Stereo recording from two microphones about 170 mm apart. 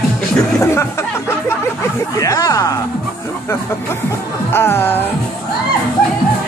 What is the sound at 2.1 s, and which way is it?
Speech, 20° left (ahead or behind).